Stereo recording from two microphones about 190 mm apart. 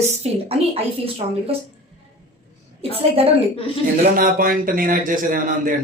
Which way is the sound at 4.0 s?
50° right (ahead or behind).